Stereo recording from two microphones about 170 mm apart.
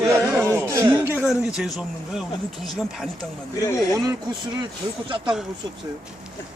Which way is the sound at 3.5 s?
20° left (ahead or behind).